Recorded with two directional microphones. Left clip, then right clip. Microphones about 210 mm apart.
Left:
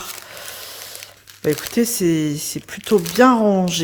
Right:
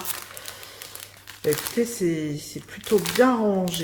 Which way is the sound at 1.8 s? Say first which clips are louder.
Left 6 dB; 50° left (ahead or behind).